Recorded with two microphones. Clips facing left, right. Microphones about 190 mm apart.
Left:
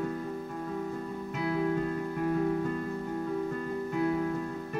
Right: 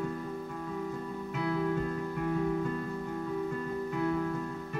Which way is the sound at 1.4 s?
50° left (ahead or behind).